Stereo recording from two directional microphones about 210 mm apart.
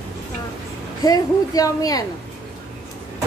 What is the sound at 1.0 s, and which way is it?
A woman's voice, 15° left (ahead or behind).